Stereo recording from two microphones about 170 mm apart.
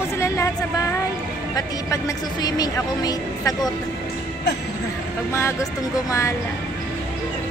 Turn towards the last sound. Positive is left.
turn(degrees=20)  # may be behind; listen again after turning